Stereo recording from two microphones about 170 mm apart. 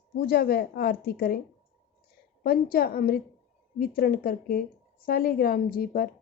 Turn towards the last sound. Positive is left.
turn(degrees=60)  # may be behind; listen again after turning